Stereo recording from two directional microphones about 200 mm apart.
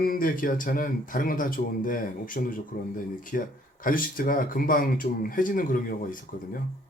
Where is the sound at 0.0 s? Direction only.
45° left (ahead or behind).